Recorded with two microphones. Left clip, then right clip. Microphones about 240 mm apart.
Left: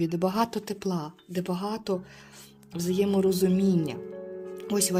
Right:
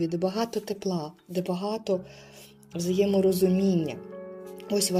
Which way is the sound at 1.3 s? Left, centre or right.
Left.